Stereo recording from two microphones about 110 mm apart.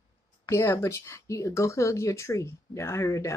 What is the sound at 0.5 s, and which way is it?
Speech, 25° left (ahead or behind).